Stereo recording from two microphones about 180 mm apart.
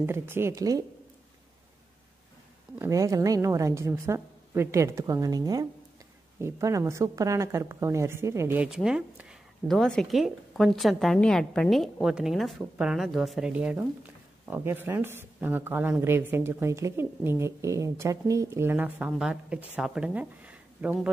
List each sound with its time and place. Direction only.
0.0 s speech: 15° right (ahead or behind)
2.8 s speech: 20° right (ahead or behind)